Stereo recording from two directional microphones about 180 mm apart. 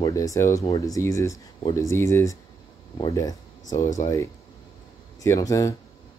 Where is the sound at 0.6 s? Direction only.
30° left (ahead or behind).